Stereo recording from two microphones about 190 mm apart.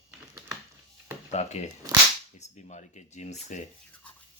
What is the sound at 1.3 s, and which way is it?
Speech, 35° left (ahead or behind).